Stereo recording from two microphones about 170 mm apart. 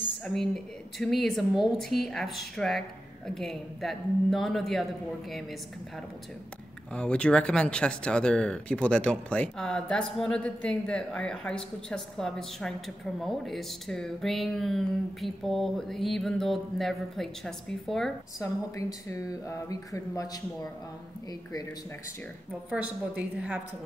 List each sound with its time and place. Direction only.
0.2 s speech: centre (ahead or behind)
18.4 s a woman's voice: 20° left (ahead or behind)
22.7 s a woman's voice: 10° right (ahead or behind)